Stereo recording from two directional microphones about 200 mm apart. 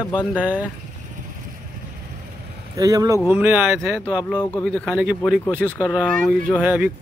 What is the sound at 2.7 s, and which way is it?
Speech, 15° right (ahead or behind).